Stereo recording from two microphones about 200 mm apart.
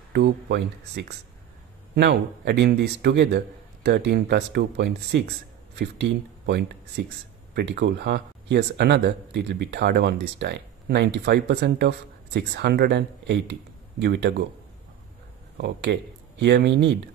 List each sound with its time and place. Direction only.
0.1 s speech: 55° right (ahead or behind)
15.5 s speech: 55° right (ahead or behind)